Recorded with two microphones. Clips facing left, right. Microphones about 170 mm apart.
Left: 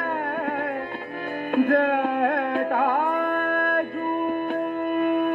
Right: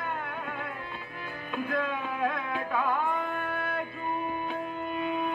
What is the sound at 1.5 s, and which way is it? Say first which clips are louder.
Music: left 12 dB; 60° left (ahead or behind).